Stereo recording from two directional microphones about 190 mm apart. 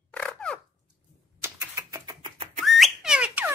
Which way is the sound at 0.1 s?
5° left (ahead or behind).